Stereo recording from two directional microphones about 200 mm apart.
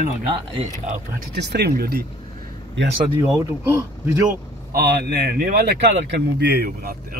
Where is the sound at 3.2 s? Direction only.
10° right (ahead or behind).